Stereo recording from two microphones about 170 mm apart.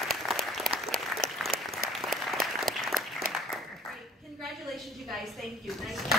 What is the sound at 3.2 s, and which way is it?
Applause, 55° right (ahead or behind).